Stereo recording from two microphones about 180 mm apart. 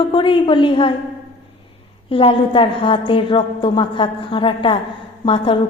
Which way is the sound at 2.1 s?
30° left (ahead or behind).